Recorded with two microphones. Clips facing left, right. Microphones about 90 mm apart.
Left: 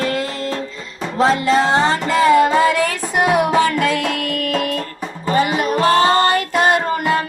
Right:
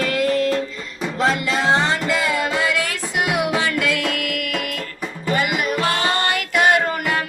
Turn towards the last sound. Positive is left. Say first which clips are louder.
# left 3 dB
turn(degrees=30)  # may be behind; listen again after turning